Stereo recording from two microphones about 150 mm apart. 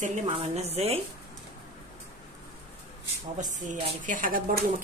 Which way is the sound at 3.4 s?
55° right (ahead or behind).